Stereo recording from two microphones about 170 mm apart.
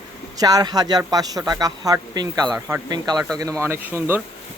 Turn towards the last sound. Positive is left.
turn(degrees=-15)  # may be behind; listen again after turning